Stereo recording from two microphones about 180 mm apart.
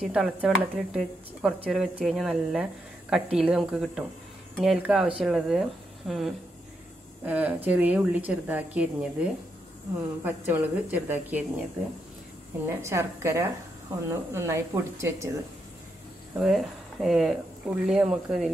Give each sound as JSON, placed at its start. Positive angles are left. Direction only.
{"t": 0.1, "sound": "a woman's voice", "side_deg": -5}
{"t": 12.6, "sound": "a woman's voice", "side_deg": -15}
{"t": 16.3, "sound": "speech", "side_deg": 0}